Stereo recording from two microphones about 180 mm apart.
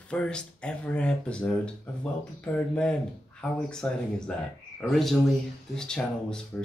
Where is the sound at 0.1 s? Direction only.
5° left (ahead or behind).